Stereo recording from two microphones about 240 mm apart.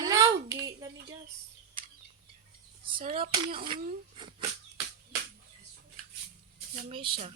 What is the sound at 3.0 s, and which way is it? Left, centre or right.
A child's voice, right.